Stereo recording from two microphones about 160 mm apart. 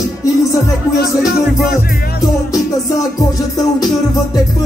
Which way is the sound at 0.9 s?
70° left (ahead or behind).